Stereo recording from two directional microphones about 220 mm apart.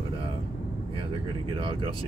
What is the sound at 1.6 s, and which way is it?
Speech, 25° right (ahead or behind).